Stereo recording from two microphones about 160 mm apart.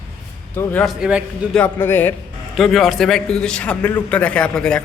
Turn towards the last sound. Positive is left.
turn(degrees=5)  # may be behind; listen again after turning